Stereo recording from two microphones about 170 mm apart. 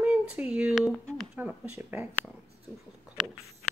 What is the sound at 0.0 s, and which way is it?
Speech, 5° right (ahead or behind).